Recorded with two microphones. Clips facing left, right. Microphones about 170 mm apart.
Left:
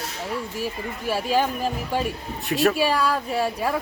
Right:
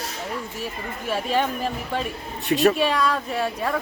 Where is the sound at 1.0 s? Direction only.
5° left (ahead or behind).